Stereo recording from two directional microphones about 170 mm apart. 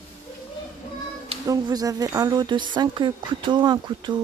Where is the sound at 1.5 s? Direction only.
20° right (ahead or behind).